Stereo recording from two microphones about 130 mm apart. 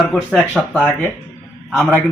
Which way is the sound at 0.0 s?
5° left (ahead or behind).